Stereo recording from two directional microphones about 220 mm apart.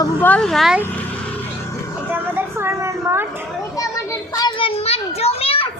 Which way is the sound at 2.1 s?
10° right (ahead or behind).